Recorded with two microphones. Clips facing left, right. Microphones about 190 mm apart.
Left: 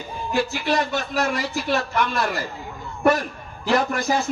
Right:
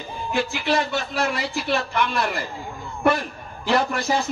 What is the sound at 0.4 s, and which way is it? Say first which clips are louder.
Speech: even; 40° left (ahead or behind).